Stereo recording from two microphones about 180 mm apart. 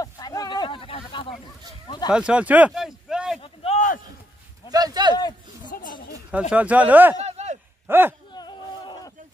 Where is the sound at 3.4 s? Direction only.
40° left (ahead or behind).